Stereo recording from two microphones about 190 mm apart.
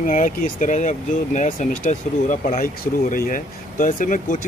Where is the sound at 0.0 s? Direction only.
40° left (ahead or behind).